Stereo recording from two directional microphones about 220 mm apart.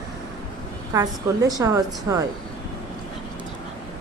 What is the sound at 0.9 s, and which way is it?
A woman's voice, 15° right (ahead or behind).